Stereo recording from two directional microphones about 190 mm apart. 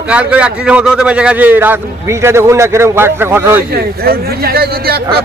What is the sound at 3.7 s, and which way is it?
Speech, 55° right (ahead or behind).